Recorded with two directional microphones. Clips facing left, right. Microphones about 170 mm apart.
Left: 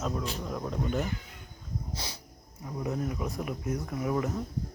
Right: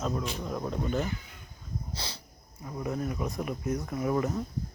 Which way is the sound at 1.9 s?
20° left (ahead or behind).